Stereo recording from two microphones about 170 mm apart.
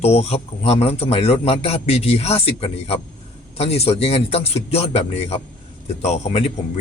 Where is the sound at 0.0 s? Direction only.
40° left (ahead or behind).